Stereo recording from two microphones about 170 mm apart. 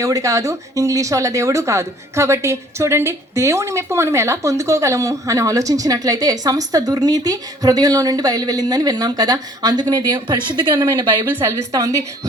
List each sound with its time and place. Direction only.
0.0 s speech: 20° right (ahead or behind)